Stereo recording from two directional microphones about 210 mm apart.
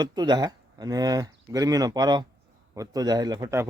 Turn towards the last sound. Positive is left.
turn(degrees=-15)  # may be behind; listen again after turning